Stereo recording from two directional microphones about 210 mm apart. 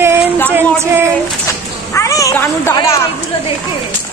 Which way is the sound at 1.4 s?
15° left (ahead or behind).